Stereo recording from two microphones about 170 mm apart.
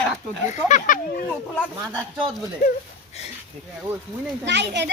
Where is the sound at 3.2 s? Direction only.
40° left (ahead or behind).